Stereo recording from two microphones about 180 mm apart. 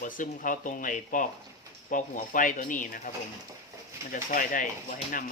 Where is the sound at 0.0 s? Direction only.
45° left (ahead or behind).